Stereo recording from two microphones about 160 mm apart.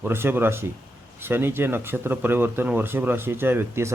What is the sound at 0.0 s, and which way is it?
Speech, 15° right (ahead or behind).